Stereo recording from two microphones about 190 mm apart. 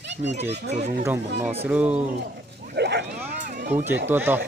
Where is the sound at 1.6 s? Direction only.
5° right (ahead or behind).